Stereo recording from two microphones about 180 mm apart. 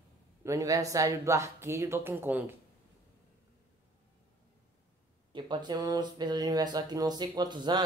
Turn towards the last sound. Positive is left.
turn(degrees=-25)  # may be behind; listen again after turning